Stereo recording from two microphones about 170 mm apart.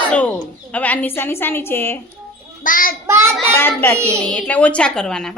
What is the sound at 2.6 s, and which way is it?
Speech, 55° left (ahead or behind).